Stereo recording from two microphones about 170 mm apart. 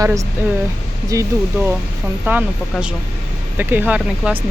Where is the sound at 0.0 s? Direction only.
20° right (ahead or behind).